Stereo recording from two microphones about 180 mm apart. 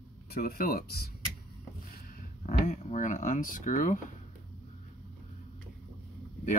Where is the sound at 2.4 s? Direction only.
45° left (ahead or behind).